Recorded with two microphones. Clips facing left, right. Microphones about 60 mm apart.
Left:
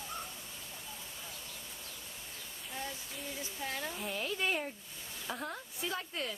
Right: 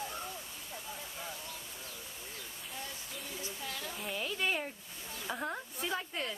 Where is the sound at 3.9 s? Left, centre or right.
Centre.